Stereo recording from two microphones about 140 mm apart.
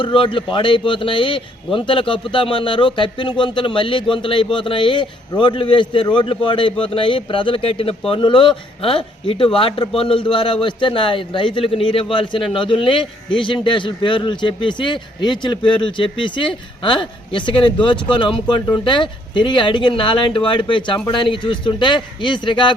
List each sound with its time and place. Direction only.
0.0 s a man's voice: 35° left (ahead or behind)